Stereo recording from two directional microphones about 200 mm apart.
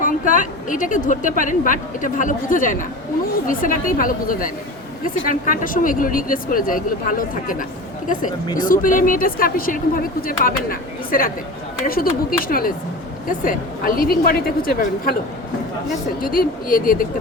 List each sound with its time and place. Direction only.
0.0 s a woman's voice: 40° left (ahead or behind)
8.5 s speech: 40° left (ahead or behind)
12.5 s speech: 45° left (ahead or behind)